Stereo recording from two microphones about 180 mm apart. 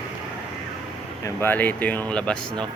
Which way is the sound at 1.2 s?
10° left (ahead or behind).